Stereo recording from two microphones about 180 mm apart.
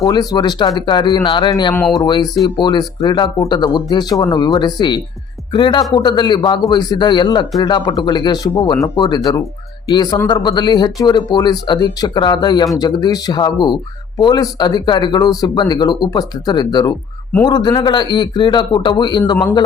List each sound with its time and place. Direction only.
0.0 s speech: 20° left (ahead or behind)